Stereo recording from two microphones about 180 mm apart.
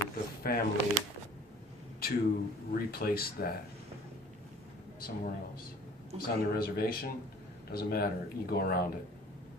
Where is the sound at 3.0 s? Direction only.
55° left (ahead or behind).